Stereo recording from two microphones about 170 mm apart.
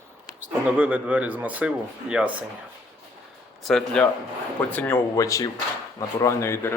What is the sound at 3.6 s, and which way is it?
A man's voice, 5° left (ahead or behind).